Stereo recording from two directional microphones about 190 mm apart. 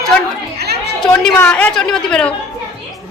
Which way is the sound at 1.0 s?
5° left (ahead or behind).